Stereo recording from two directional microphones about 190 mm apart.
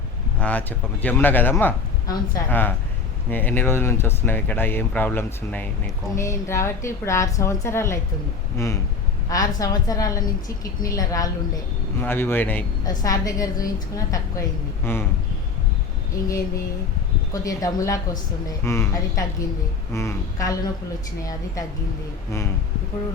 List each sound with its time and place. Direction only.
0.3 s a woman's voice: 5° left (ahead or behind)
17.3 s speech: 15° left (ahead or behind)